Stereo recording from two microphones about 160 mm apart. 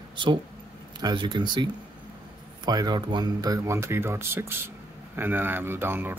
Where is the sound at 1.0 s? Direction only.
30° right (ahead or behind).